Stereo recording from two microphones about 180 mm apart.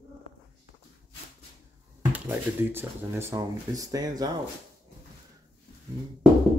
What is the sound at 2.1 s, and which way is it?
Speech, 10° right (ahead or behind).